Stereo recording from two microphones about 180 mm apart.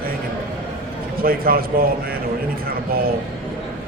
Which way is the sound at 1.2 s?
55° right (ahead or behind).